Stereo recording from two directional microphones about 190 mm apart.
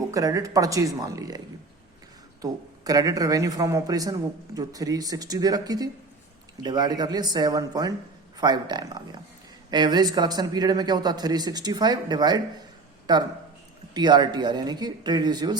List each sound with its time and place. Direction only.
0.1 s speech: 15° right (ahead or behind)
2.4 s speech: 20° right (ahead or behind)